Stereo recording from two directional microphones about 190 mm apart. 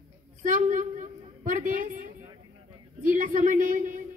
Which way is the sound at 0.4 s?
45° right (ahead or behind).